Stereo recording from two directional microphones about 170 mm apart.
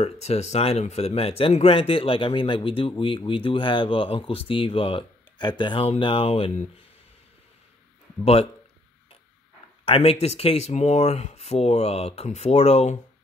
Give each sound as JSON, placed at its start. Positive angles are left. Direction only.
{"t": 0.0, "sound": "speech", "side_deg": 40}
{"t": 9.8, "sound": "speech", "side_deg": 35}